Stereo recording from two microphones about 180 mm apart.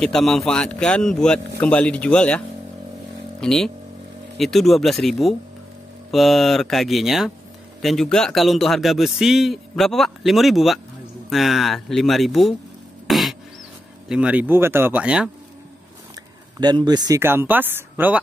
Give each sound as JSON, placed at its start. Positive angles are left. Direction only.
{"t": 0.0, "sound": "speech", "side_deg": 0}
{"t": 13.0, "sound": "a sound", "side_deg": 0}
{"t": 14.0, "sound": "speech", "side_deg": -5}
{"t": 16.5, "sound": "speech", "side_deg": -25}